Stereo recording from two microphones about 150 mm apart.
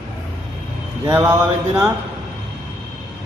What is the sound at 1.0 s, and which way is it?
Speech, 15° right (ahead or behind).